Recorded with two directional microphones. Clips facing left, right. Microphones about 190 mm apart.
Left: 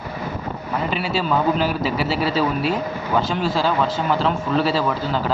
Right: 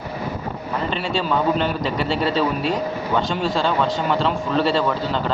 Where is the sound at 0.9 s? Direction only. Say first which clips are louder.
Left 1 dB; 5° left (ahead or behind).